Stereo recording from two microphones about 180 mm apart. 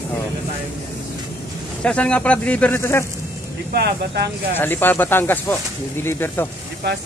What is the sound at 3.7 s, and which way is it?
Speech, 65° right (ahead or behind).